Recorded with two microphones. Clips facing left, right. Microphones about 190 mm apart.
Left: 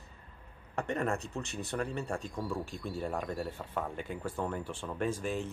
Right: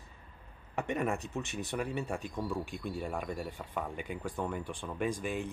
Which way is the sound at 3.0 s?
Centre (ahead or behind).